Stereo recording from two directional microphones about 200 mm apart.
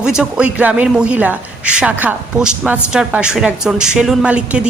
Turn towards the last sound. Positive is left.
turn(degrees=-5)  # may be behind; listen again after turning